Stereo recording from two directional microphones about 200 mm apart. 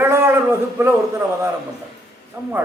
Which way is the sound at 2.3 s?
15° right (ahead or behind).